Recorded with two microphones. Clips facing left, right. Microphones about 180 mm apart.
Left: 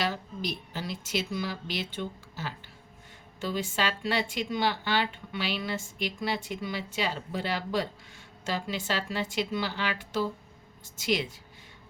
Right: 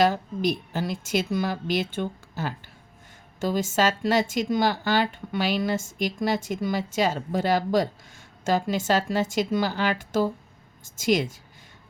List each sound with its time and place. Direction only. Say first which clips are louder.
0.0 s speech: right 10 dB; 45° right (ahead or behind)